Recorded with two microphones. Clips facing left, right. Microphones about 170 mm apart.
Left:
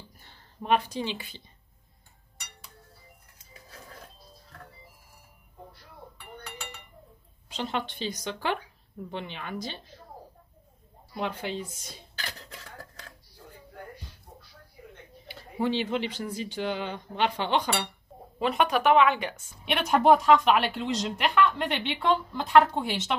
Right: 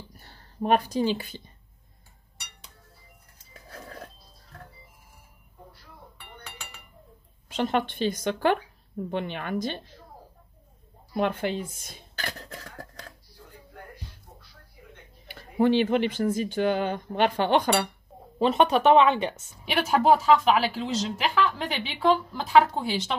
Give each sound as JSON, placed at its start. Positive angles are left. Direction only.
{"t": 0.2, "sound": "speech", "side_deg": -40}
{"t": 7.4, "sound": "speech", "side_deg": -50}
{"t": 11.1, "sound": "speech", "side_deg": -55}
{"t": 15.2, "sound": "speech", "side_deg": -55}
{"t": 18.4, "sound": "a woman's voice", "side_deg": -25}
{"t": 19.6, "sound": "a woman's voice", "side_deg": -5}